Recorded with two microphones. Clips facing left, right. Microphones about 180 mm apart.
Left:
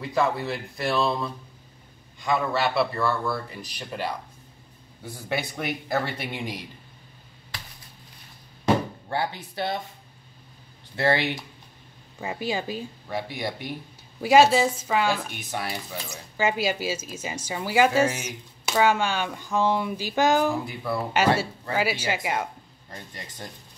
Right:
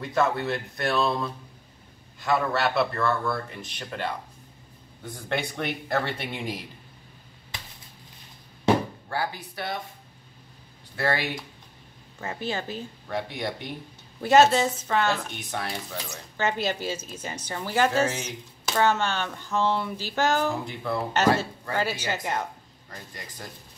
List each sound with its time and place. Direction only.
0.0 s speech: centre (ahead or behind)
9.1 s speech: 25° left (ahead or behind)
11.0 s speech: 25° left (ahead or behind)
12.2 s speech: 15° left (ahead or behind)
23.1 s speech: 25° left (ahead or behind)